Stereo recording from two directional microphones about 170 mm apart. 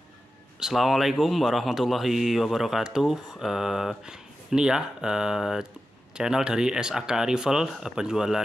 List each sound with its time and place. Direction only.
0.6 s speech: centre (ahead or behind)